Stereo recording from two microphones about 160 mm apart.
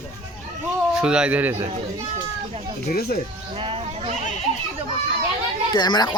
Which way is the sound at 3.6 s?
35° right (ahead or behind).